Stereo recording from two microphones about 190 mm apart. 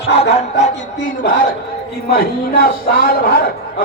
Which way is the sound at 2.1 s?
50° left (ahead or behind).